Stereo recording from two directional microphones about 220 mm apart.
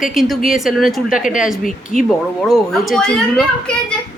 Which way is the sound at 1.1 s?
35° left (ahead or behind).